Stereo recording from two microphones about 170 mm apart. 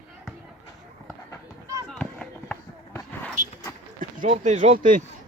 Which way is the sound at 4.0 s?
50° right (ahead or behind).